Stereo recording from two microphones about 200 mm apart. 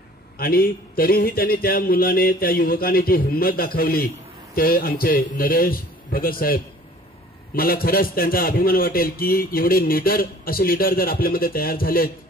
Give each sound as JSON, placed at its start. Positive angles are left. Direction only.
{"t": 0.4, "sound": "a man's voice", "side_deg": 50}
{"t": 7.5, "sound": "a man's voice", "side_deg": 45}